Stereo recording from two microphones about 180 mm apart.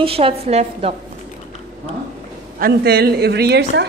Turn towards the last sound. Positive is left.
turn(degrees=-70)  # may be behind; listen again after turning